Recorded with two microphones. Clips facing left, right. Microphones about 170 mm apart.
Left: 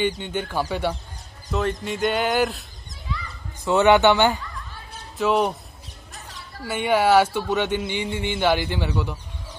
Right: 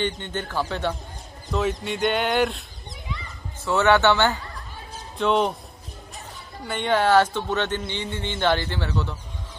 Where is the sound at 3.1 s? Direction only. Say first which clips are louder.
Left 3 dB; 20° right (ahead or behind).